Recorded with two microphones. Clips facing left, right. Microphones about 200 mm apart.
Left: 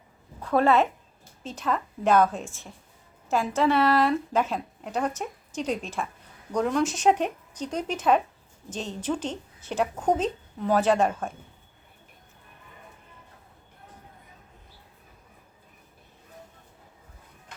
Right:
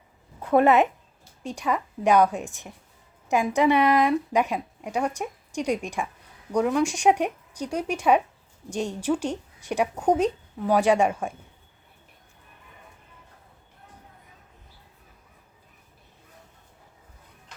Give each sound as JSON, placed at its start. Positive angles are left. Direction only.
{"t": 0.4, "sound": "speech", "side_deg": -20}